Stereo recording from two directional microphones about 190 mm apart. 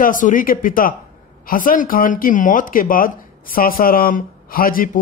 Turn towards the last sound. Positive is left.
turn(degrees=50)  # may be behind; listen again after turning